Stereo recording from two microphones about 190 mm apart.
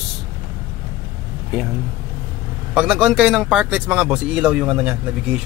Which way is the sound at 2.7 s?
5° right (ahead or behind).